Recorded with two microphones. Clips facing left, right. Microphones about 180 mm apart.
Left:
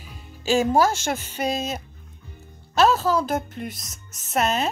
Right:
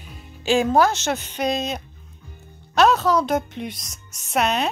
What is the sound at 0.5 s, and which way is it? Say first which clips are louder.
A woman's voice: right 1 dB; 10° left (ahead or behind).